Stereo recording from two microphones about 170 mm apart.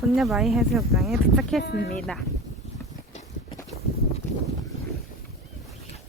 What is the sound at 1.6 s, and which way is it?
Speech, 70° left (ahead or behind).